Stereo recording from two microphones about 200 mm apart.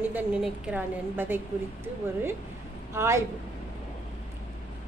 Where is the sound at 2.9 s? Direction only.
15° right (ahead or behind).